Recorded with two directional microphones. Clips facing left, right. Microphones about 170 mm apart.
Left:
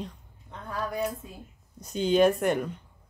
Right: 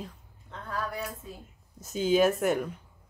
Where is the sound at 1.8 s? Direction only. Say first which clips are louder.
Left 2 dB; 5° right (ahead or behind).